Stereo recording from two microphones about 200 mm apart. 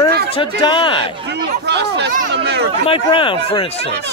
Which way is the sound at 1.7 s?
60° right (ahead or behind).